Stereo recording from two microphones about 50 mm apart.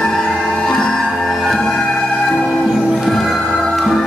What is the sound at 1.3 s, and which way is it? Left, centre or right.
Music, centre.